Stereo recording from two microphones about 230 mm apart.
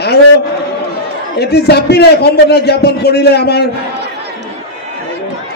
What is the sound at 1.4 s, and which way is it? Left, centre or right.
Speech, left.